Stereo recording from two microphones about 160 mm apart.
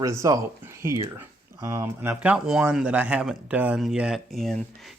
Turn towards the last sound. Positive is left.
turn(degrees=5)  # may be behind; listen again after turning